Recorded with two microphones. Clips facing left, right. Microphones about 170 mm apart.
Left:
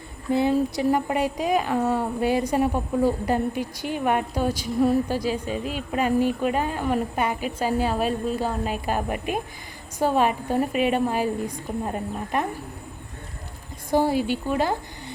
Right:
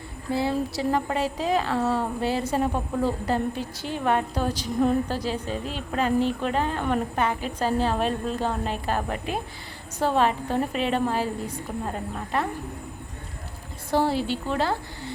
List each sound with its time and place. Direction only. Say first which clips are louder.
0.3 s a woman's voice: left 4 dB; 20° left (ahead or behind)
13.9 s a woman's voice: left 2 dB; 15° left (ahead or behind)